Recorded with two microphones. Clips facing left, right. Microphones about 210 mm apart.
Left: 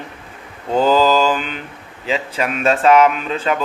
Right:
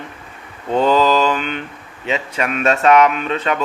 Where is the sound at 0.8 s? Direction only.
30° left (ahead or behind).